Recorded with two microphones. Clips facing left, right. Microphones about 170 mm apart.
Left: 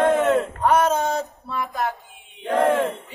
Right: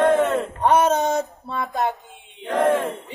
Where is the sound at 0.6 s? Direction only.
25° right (ahead or behind).